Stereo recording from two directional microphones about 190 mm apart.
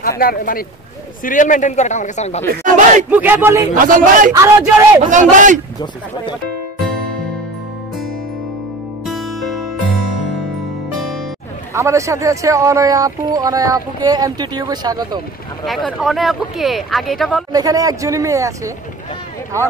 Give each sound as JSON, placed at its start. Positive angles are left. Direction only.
{"t": 0.0, "sound": "a man's voice", "side_deg": 50}
{"t": 2.6, "sound": "speech", "side_deg": -45}
{"t": 3.1, "sound": "speech", "side_deg": -10}
{"t": 3.7, "sound": "speech", "side_deg": -45}
{"t": 4.3, "sound": "speech", "side_deg": -15}
{"t": 5.1, "sound": "a man's voice", "side_deg": -40}
{"t": 9.0, "sound": "music", "side_deg": 0}
{"t": 11.7, "sound": "speech", "side_deg": -15}
{"t": 15.6, "sound": "speech", "side_deg": 0}
{"t": 17.5, "sound": "speech", "side_deg": -20}